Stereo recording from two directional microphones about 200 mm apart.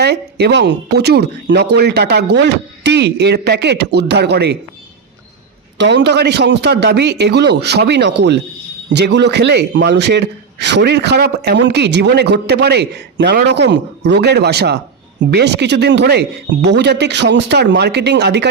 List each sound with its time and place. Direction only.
0.0 s speech: 55° right (ahead or behind)
5.7 s speech: 60° right (ahead or behind)